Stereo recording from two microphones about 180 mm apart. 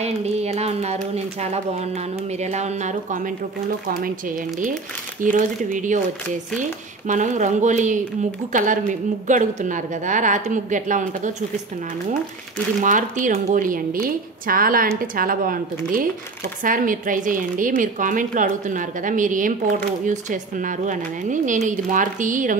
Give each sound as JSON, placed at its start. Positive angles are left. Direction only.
{"t": 0.0, "sound": "speech", "side_deg": -35}
{"t": 5.2, "sound": "a woman's voice", "side_deg": -45}
{"t": 12.8, "sound": "a woman's voice", "side_deg": -45}